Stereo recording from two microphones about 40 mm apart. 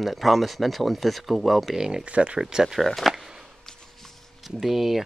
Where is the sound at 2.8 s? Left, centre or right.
Centre.